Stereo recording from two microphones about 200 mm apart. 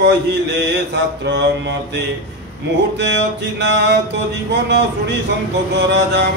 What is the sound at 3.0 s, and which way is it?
Mantra, 60° right (ahead or behind).